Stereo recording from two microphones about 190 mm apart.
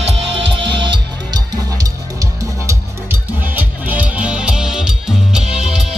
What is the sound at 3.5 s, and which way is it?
Music, 10° right (ahead or behind).